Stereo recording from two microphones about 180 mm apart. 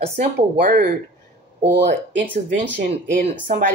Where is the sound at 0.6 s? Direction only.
45° right (ahead or behind).